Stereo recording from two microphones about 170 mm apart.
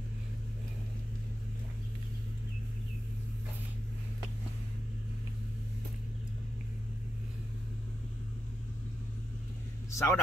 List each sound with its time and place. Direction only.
9.8 s vehicle: 15° left (ahead or behind)